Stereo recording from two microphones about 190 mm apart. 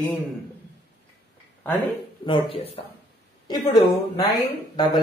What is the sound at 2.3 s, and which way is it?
Speech, 30° left (ahead or behind).